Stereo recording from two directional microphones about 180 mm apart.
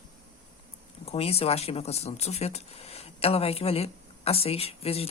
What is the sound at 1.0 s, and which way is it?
Speech, 35° left (ahead or behind).